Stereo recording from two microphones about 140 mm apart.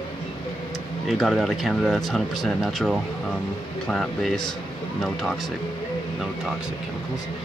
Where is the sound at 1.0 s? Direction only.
Centre (ahead or behind).